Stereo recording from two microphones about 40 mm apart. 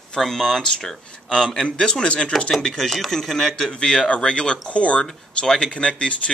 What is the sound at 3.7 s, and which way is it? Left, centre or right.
Speech, left.